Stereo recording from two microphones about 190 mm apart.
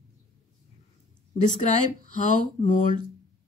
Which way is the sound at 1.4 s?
40° left (ahead or behind).